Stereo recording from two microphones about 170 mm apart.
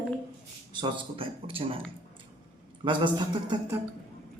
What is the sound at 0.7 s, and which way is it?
A man's voice, 25° right (ahead or behind).